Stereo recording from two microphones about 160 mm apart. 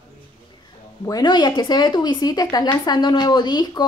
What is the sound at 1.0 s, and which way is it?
Speech, 25° left (ahead or behind).